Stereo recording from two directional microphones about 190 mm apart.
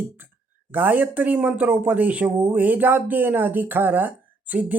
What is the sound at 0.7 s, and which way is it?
Speech, 10° right (ahead or behind).